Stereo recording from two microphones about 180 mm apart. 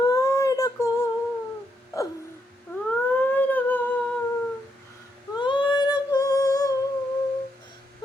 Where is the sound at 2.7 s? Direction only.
15° left (ahead or behind).